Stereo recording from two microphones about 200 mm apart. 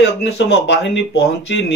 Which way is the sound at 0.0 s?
65° left (ahead or behind).